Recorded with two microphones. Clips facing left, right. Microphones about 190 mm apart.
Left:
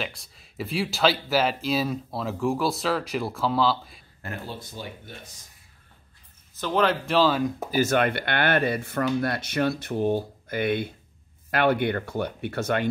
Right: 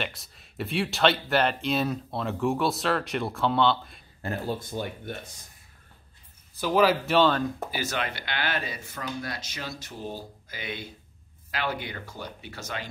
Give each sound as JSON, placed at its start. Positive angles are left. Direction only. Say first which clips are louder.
{"t": 0.0, "sound": "speech", "louder": "left 1 dB", "side_deg": 0}
{"t": 4.5, "sound": "speech", "louder": "right 6 dB", "side_deg": -50}
{"t": 6.6, "sound": "speech", "louder": "right 1 dB", "side_deg": -5}
{"t": 7.7, "sound": "speech", "louder": "left 9 dB", "side_deg": 50}